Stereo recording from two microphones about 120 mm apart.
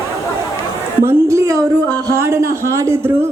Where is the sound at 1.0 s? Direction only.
25° right (ahead or behind).